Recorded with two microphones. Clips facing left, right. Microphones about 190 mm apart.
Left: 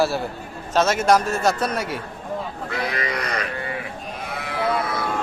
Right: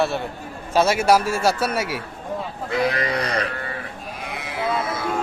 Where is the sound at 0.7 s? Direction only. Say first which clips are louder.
Right 1 dB; 10° right (ahead or behind).